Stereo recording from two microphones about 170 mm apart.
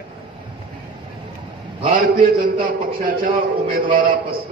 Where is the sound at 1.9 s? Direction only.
55° right (ahead or behind).